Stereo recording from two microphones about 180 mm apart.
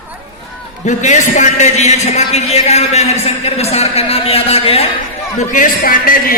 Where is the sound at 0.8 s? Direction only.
40° left (ahead or behind).